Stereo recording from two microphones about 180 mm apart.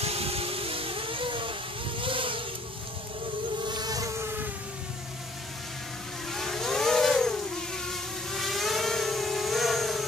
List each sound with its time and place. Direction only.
0.0 s vehicle: 35° right (ahead or behind)
3.6 s insect: 25° right (ahead or behind)
6.3 s vehicle: centre (ahead or behind)